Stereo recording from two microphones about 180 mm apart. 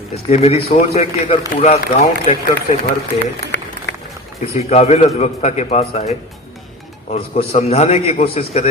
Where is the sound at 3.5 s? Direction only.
80° left.